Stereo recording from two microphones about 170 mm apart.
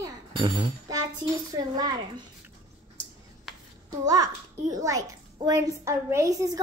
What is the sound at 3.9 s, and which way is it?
A child's voice, 20° right (ahead or behind).